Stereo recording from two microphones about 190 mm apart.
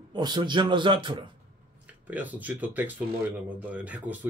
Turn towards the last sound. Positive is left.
turn(degrees=-10)  # may be behind; listen again after turning